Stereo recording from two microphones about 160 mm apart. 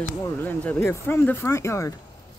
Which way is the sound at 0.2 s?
10° left (ahead or behind).